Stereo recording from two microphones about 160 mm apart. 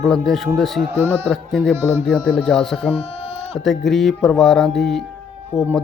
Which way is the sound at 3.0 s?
40° left (ahead or behind).